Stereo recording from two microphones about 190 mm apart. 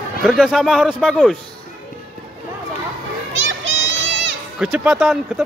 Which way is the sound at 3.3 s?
80° right.